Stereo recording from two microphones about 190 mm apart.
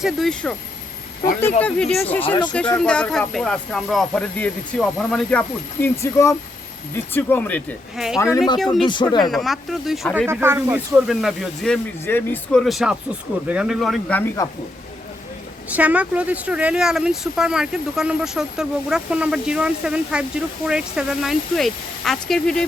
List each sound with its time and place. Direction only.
0.0 s speech: centre (ahead or behind)
7.9 s speech: centre (ahead or behind)
8.8 s speech: 25° left (ahead or behind)
9.3 s speech: centre (ahead or behind)
10.2 s speech: 15° right (ahead or behind)
10.9 s speech: centre (ahead or behind)
15.7 s speech: 5° right (ahead or behind)